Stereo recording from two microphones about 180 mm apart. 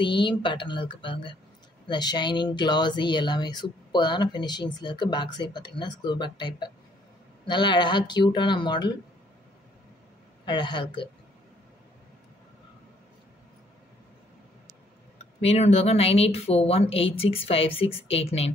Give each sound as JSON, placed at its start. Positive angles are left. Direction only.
{"t": 0.0, "sound": "speech", "side_deg": 25}
{"t": 10.4, "sound": "speech", "side_deg": 25}
{"t": 15.1, "sound": "speech", "side_deg": 35}